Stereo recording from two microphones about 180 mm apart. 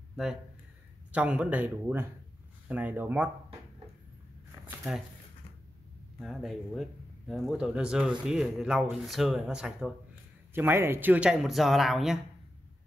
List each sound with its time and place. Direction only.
0.1 s speech: centre (ahead or behind)
4.6 s a sound: centre (ahead or behind)
6.1 s speech: centre (ahead or behind)
10.5 s speech: 10° right (ahead or behind)